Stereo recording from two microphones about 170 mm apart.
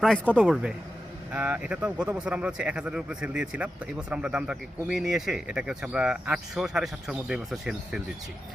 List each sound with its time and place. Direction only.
0.3 s speech: 5° right (ahead or behind)
1.8 s speech: 20° right (ahead or behind)
2.1 s speech: 5° right (ahead or behind)